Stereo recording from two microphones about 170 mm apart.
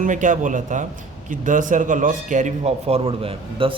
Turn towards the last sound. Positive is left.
turn(degrees=-35)  # may be behind; listen again after turning